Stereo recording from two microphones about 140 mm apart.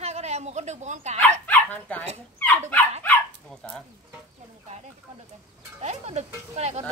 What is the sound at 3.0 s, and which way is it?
Dog, 5° left (ahead or behind).